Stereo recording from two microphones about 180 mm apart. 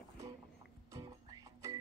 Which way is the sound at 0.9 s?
20° right (ahead or behind).